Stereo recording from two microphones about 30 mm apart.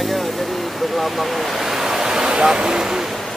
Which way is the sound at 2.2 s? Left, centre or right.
Right.